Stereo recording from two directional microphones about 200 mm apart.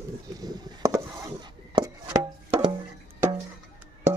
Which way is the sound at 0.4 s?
20° right (ahead or behind).